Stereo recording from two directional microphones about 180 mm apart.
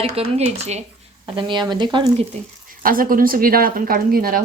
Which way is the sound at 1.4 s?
25° right (ahead or behind).